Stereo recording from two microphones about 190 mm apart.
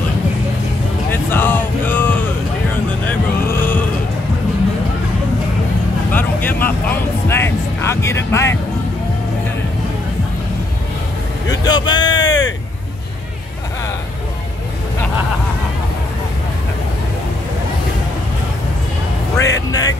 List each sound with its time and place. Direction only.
1.1 s music: 10° left (ahead or behind)
6.1 s speech: 10° left (ahead or behind)
11.4 s speech: 20° left (ahead or behind)
19.3 s speech: 15° left (ahead or behind)